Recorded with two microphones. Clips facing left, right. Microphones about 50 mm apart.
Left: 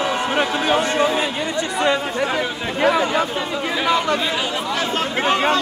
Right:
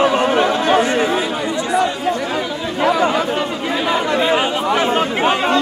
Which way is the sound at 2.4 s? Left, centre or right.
Left.